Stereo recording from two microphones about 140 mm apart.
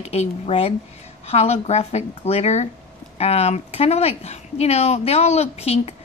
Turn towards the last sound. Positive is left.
turn(degrees=50)  # may be behind; listen again after turning